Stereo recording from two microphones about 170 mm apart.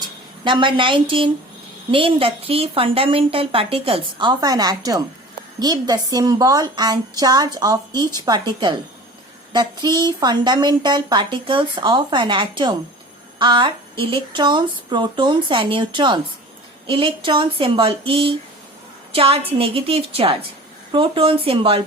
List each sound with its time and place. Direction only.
0.0 s a woman's voice: 30° right (ahead or behind)